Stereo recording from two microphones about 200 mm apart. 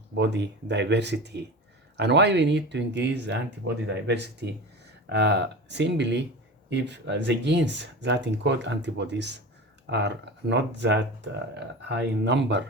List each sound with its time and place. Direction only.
0.2 s speech: 60° right (ahead or behind)